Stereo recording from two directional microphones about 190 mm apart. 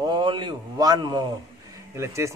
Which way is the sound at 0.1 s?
25° right (ahead or behind).